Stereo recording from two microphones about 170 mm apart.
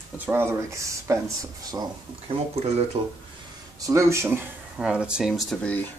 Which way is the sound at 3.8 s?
15° right (ahead or behind).